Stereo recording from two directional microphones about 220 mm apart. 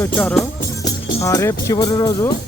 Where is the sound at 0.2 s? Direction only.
5° left (ahead or behind).